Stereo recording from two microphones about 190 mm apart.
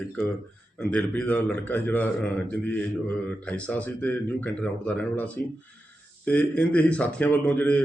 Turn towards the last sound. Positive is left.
turn(degrees=10)  # may be behind; listen again after turning